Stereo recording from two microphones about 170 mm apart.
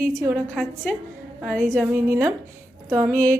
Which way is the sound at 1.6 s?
10° right (ahead or behind).